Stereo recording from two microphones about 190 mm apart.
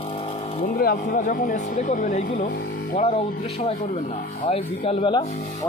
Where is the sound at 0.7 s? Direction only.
50° left (ahead or behind).